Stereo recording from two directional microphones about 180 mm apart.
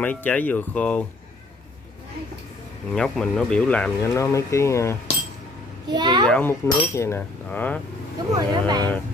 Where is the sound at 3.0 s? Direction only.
5° left (ahead or behind).